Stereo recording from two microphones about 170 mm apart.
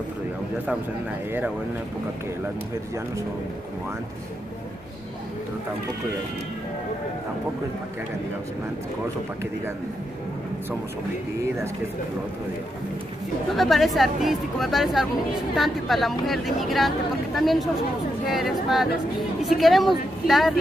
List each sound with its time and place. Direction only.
13.6 s speech: centre (ahead or behind)